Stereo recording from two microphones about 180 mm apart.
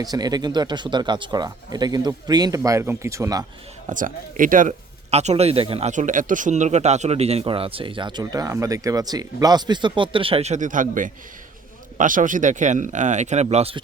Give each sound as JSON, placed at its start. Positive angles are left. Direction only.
{"t": 0.0, "sound": "speech", "side_deg": -20}
{"t": 3.8, "sound": "speech", "side_deg": -45}
{"t": 5.1, "sound": "a man's voice", "side_deg": -35}
{"t": 5.9, "sound": "a man's voice", "side_deg": -45}